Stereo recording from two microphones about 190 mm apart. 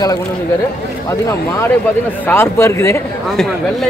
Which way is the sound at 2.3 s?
15° left (ahead or behind).